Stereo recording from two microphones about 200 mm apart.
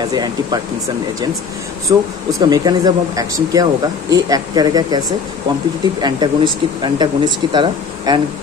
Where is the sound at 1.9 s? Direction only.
15° right (ahead or behind).